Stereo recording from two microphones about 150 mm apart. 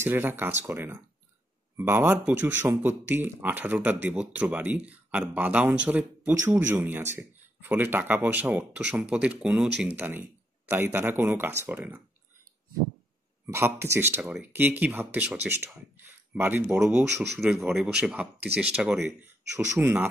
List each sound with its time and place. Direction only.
0.0 s speech: 15° right (ahead or behind)
13.5 s a man's voice: 15° right (ahead or behind)
19.5 s speech: 15° right (ahead or behind)